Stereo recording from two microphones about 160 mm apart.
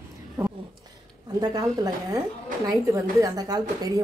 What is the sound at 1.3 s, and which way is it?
Speech, 25° right (ahead or behind).